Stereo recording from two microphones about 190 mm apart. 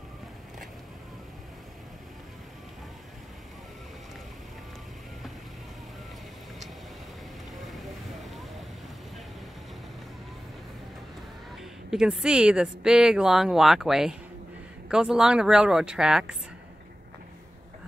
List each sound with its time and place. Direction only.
11.9 s speech: 5° right (ahead or behind)